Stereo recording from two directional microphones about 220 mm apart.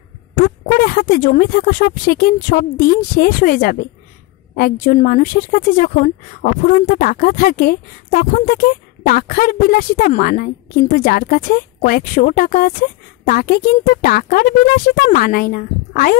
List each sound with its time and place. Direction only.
0.7 s speech: 40° left (ahead or behind)